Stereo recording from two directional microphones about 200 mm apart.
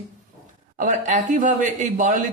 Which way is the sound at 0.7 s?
40° right (ahead or behind).